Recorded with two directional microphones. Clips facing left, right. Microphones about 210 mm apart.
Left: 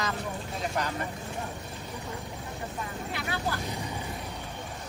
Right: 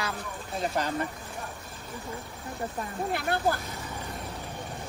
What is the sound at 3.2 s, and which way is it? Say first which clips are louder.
Speech: right 4 dB; 50° right (ahead or behind).